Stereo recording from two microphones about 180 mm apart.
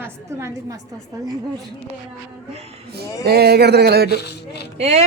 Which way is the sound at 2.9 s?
60° right (ahead or behind).